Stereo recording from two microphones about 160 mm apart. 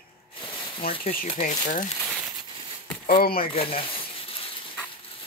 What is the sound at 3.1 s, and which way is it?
Speech, 65° left (ahead or behind).